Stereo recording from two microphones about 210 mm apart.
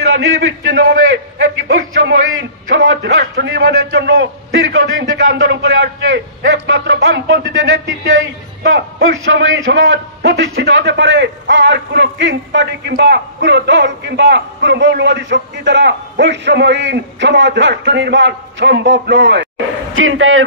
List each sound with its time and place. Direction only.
0.3 s a man's voice: 70° right (ahead or behind); by 19.4 s 55° right (ahead or behind)
20.0 s a man's voice: 70° right (ahead or behind)